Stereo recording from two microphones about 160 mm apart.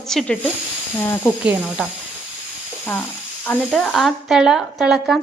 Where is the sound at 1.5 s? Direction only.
5° right (ahead or behind).